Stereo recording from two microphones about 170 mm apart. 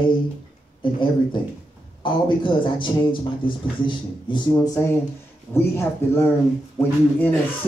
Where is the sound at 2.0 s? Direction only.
30° left (ahead or behind).